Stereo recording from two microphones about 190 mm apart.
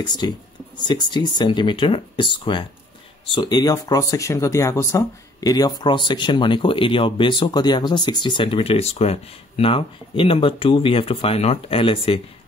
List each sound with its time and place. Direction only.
0.0 s speech: 20° left (ahead or behind)